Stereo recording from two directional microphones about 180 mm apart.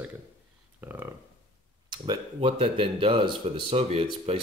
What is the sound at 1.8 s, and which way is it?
Speech, 25° right (ahead or behind).